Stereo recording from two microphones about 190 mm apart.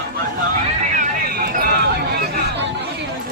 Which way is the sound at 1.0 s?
50° right (ahead or behind).